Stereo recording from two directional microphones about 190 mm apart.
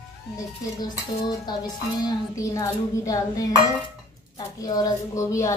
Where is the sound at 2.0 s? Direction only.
15° left (ahead or behind).